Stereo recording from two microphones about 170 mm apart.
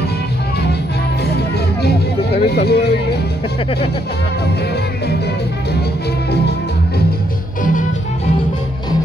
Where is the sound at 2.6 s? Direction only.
70° left (ahead or behind).